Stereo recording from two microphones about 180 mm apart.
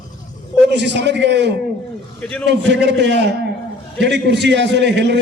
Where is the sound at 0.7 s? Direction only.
70° right (ahead or behind).